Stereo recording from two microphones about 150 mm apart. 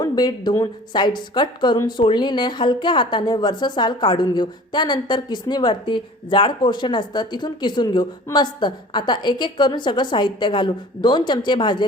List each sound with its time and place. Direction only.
0.0 s a woman's voice: 25° left (ahead or behind)